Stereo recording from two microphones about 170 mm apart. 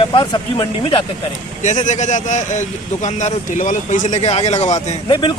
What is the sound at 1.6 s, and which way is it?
Speech, 45° left (ahead or behind).